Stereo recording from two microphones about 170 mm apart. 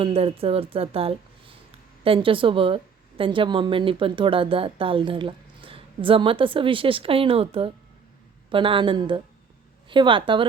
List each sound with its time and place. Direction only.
0.0 s a woman's voice: 35° right (ahead or behind)